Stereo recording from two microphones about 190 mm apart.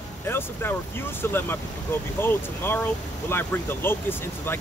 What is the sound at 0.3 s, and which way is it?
Speech, 10° left (ahead or behind).